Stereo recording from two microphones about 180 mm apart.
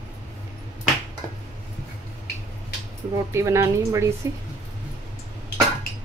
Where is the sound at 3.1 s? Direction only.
15° right (ahead or behind).